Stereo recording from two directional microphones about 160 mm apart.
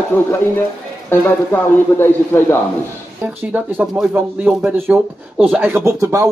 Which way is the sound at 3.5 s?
10° right (ahead or behind).